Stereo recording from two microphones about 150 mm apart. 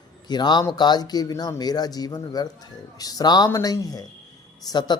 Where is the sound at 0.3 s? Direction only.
30° left (ahead or behind).